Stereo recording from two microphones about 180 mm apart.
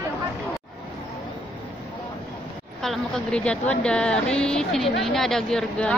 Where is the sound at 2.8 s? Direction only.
5° left (ahead or behind).